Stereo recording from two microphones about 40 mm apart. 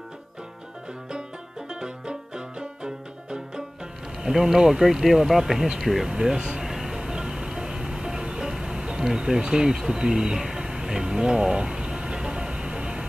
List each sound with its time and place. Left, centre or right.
1.7 s banjo: centre
4.2 s speech: centre
6.7 s music: centre